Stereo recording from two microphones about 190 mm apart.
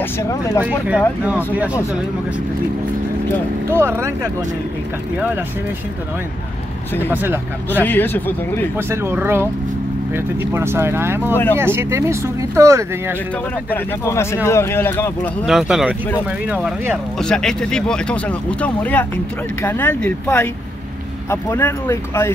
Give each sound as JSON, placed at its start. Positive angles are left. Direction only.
{"t": 0.0, "sound": "speech", "side_deg": 15}
{"t": 0.6, "sound": "speech", "side_deg": -5}
{"t": 3.7, "sound": "speech", "side_deg": -15}
{"t": 7.1, "sound": "speech", "side_deg": -10}
{"t": 7.8, "sound": "speech", "side_deg": 10}
{"t": 8.7, "sound": "speech", "side_deg": -10}
{"t": 13.7, "sound": "speech", "side_deg": 10}
{"t": 15.4, "sound": "speech", "side_deg": -5}
{"t": 17.2, "sound": "speech", "side_deg": 5}